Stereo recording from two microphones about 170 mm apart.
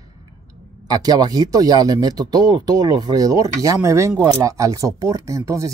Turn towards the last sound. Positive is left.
turn(degrees=-20)  # may be behind; listen again after turning